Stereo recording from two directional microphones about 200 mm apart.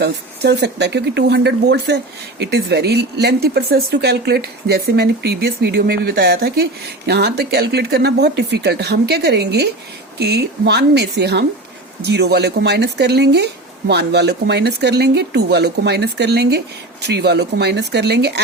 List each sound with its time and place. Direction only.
0.0 s speech: 55° right (ahead or behind)